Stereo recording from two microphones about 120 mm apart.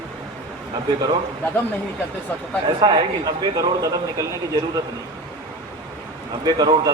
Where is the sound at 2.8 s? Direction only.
40° right (ahead or behind).